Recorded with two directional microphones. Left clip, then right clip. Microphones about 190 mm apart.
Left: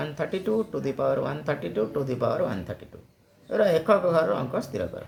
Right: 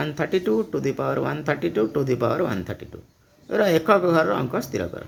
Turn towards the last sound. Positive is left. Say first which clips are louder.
# right 3 dB
turn(degrees=-45)  # may be behind; listen again after turning